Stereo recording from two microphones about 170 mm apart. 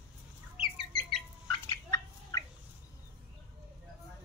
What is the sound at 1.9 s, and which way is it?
Fowl, 20° left (ahead or behind).